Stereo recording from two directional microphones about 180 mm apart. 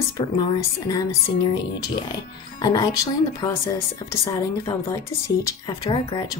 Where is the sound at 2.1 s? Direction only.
20° left (ahead or behind).